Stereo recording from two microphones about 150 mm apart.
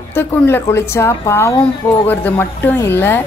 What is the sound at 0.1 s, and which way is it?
A woman's voice, 15° left (ahead or behind).